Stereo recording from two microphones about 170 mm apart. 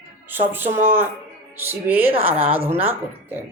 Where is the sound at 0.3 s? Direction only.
10° right (ahead or behind).